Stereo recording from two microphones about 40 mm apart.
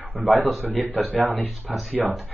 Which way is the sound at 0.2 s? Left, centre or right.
Right.